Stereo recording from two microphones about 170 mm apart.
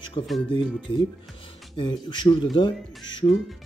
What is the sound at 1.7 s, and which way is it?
Speech, 25° left (ahead or behind).